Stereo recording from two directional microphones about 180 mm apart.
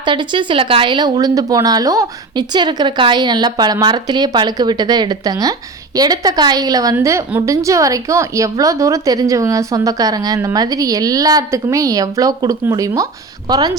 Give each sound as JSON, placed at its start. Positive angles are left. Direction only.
{"t": 0.0, "sound": "a woman's voice", "side_deg": -25}